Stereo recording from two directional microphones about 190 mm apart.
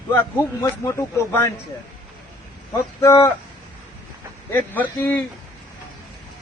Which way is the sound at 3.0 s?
15° left (ahead or behind).